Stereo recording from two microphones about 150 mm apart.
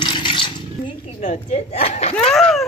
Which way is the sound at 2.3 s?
Centre (ahead or behind).